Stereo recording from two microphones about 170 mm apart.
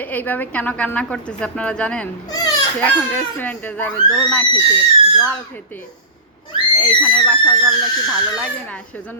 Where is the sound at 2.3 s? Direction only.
20° left (ahead or behind).